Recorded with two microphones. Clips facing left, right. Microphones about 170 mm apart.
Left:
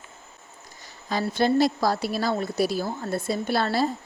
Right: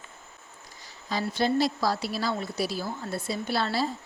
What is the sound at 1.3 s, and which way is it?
Speech, 50° left (ahead or behind).